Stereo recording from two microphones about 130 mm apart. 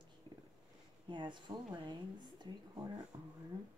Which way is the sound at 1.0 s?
35° right (ahead or behind).